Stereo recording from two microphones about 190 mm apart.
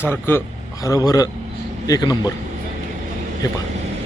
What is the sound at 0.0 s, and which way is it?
A man's voice, 10° left (ahead or behind).